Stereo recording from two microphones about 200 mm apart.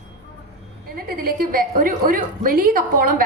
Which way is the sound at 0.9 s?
45° right (ahead or behind).